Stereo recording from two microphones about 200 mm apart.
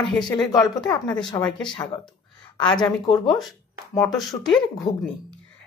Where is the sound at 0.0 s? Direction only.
Centre (ahead or behind).